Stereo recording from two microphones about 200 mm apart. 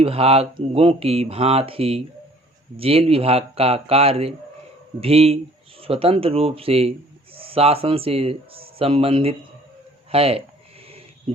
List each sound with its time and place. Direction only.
0.0 s speech: 30° right (ahead or behind)